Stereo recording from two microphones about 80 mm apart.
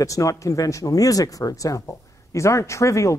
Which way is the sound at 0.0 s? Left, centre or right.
Left.